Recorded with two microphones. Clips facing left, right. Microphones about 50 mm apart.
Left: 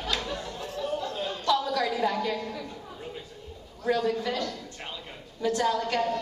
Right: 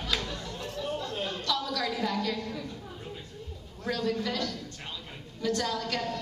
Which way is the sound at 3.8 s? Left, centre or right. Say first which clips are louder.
Left 4 dB; centre.